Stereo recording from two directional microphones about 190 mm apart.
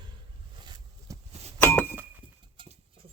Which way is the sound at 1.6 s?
10° left (ahead or behind).